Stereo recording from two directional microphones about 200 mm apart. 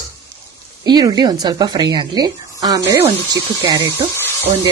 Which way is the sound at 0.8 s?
20° right (ahead or behind).